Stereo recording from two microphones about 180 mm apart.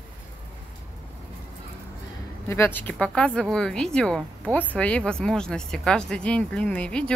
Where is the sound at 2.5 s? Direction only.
10° left (ahead or behind).